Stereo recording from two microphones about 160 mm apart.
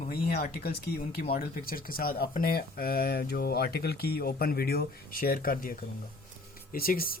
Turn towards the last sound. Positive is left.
turn(degrees=65)  # may be behind; listen again after turning